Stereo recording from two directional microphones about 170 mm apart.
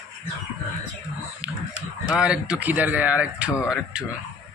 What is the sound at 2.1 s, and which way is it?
Speech, 5° right (ahead or behind).